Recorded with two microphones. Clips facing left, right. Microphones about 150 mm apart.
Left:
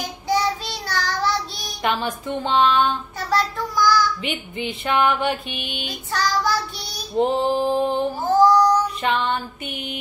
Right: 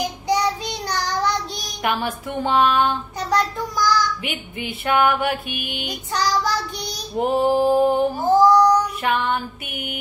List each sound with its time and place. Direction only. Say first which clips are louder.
0.3 s child singing: even; 15° right (ahead or behind)